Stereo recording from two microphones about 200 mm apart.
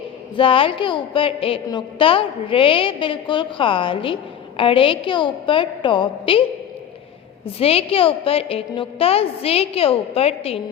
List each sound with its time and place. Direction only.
0.3 s a woman's voice: 25° left (ahead or behind)
7.6 s a woman's voice: 30° left (ahead or behind)